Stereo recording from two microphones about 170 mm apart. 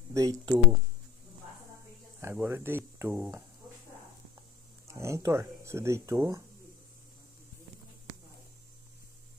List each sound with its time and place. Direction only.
0.1 s speech: 20° right (ahead or behind)
2.4 s speech: 15° right (ahead or behind)
4.8 s speech: 15° right (ahead or behind)